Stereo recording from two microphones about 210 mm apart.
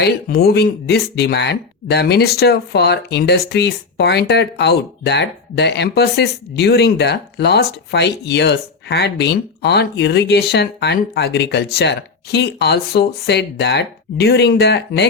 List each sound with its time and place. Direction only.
0.0 s speech: 50° left (ahead or behind)